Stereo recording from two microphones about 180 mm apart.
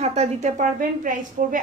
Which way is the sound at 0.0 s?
35° right (ahead or behind).